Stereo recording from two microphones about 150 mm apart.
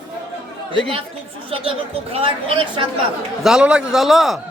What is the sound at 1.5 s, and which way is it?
Speech, 40° right (ahead or behind).